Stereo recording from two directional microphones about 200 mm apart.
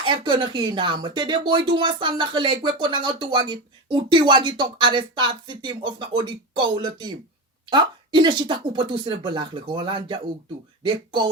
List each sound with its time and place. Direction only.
0.0 s speech: 25° right (ahead or behind)